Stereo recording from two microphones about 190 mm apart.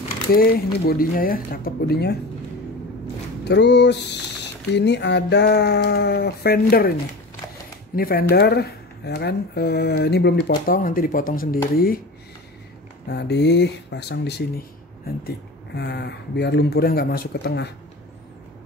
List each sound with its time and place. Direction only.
0.3 s speech: 50° left (ahead or behind)
3.4 s speech: 65° left (ahead or behind)
7.9 s speech: 50° left (ahead or behind)
10.7 s speech: 45° left (ahead or behind)
13.1 s speech: 60° left (ahead or behind)